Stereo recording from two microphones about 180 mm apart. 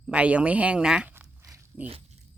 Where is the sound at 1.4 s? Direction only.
15° right (ahead or behind).